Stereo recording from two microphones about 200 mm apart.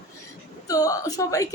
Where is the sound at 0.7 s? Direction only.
15° left (ahead or behind).